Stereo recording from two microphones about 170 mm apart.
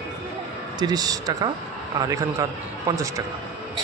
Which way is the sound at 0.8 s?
20° right (ahead or behind).